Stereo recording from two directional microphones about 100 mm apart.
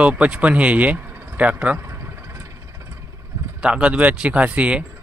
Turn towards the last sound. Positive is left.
turn(degrees=-10)  # may be behind; listen again after turning